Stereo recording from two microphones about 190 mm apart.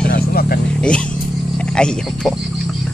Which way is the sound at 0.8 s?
5° left (ahead or behind).